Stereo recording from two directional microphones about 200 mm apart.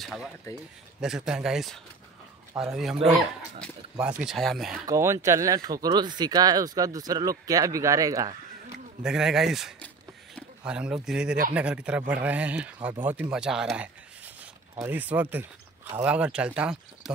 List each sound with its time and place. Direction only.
0.0 s speech: centre (ahead or behind)
4.2 s speech: centre (ahead or behind)
4.8 s speech: 15° right (ahead or behind)
9.0 s speech: 5° right (ahead or behind)